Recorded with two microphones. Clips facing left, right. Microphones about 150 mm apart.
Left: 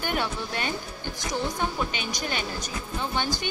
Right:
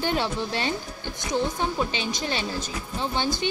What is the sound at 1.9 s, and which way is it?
Speech, 25° right (ahead or behind).